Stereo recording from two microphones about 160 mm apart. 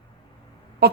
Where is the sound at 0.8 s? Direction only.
90° right.